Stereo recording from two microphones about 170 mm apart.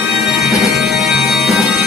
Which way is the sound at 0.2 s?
Centre (ahead or behind).